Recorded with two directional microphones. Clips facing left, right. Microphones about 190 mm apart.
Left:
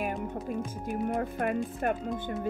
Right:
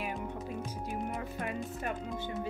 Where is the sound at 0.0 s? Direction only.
50° left (ahead or behind).